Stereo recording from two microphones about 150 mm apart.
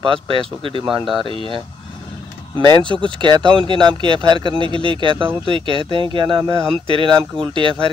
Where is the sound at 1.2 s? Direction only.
35° right (ahead or behind).